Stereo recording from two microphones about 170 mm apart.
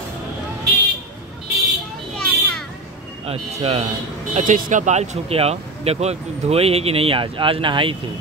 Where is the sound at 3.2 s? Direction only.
35° right (ahead or behind).